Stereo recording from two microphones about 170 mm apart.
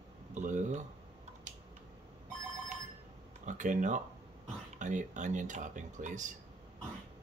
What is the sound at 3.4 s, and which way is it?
Speech, 50° right (ahead or behind).